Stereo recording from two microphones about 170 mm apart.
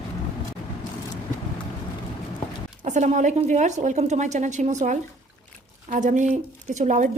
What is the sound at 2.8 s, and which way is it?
A woman's voice, 45° right (ahead or behind).